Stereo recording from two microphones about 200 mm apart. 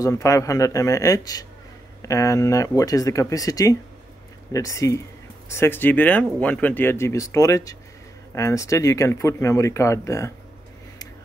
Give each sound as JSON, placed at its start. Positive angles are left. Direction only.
{"t": 0.0, "sound": "speech", "side_deg": 15}